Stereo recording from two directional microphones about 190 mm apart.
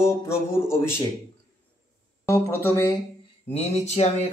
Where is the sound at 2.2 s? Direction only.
15° left (ahead or behind).